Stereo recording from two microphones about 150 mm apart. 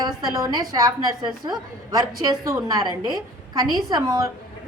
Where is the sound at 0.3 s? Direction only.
25° right (ahead or behind).